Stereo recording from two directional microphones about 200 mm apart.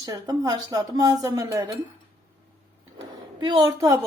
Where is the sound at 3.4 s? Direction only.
20° right (ahead or behind).